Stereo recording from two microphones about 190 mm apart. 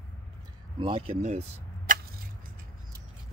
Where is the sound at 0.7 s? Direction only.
30° right (ahead or behind).